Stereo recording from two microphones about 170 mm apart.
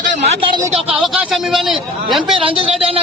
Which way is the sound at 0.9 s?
5° right (ahead or behind).